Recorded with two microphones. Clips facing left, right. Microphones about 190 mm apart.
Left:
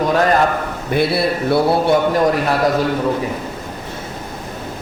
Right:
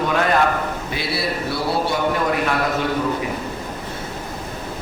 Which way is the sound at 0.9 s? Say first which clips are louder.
Left 10 dB; 55° left (ahead or behind).